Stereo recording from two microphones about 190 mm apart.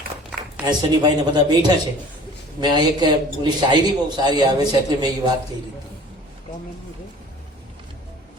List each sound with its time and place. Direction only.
0.7 s a man's voice: 25° right (ahead or behind)